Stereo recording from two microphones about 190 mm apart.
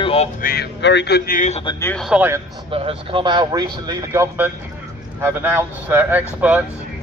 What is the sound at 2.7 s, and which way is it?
Speech, 30° right (ahead or behind).